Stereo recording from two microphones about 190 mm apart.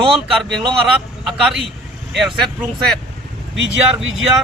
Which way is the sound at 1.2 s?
Centre (ahead or behind).